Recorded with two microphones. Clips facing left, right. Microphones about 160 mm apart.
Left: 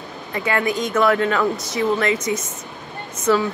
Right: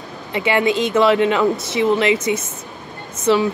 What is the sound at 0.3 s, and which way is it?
Speech, 20° right (ahead or behind).